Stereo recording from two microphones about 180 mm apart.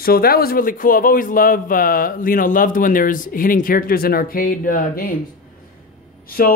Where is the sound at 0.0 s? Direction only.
55° left (ahead or behind).